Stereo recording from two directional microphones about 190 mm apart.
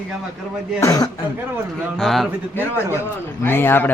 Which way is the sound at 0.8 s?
20° left (ahead or behind).